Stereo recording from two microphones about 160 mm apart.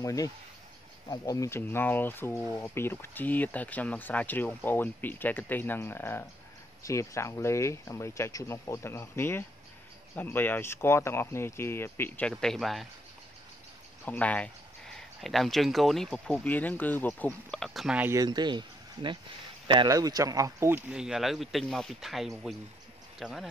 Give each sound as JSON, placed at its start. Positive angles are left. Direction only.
{"t": 0.0, "sound": "speech", "side_deg": 20}
{"t": 14.0, "sound": "speech", "side_deg": 10}
{"t": 18.1, "sound": "speech", "side_deg": -25}
{"t": 20.9, "sound": "speech", "side_deg": -5}